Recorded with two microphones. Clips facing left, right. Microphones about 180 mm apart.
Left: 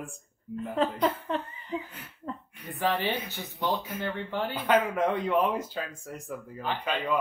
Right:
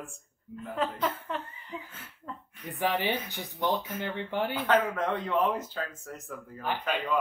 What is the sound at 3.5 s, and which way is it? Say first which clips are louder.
Speech: right 1 dB; 10° left (ahead or behind).